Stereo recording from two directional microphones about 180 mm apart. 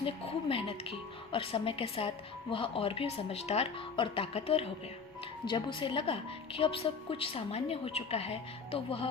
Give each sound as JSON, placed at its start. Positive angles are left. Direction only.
{"t": 0.0, "sound": "speech", "side_deg": 30}